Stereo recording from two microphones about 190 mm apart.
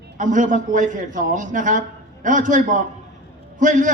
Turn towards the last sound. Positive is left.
turn(degrees=-40)  # may be behind; listen again after turning